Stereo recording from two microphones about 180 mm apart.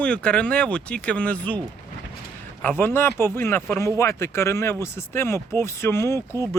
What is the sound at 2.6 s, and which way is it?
Speech, 10° left (ahead or behind).